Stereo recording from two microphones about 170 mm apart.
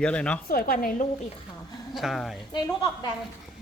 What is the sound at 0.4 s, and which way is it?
Speech, 60° left (ahead or behind).